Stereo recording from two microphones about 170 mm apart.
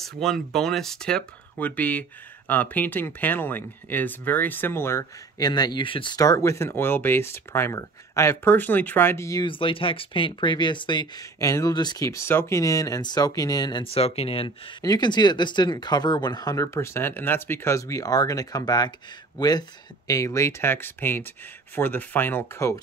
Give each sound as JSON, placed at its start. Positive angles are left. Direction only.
{"t": 0.0, "sound": "speech", "side_deg": 0}
{"t": 9.5, "sound": "speech", "side_deg": 30}
{"t": 14.8, "sound": "speech", "side_deg": 25}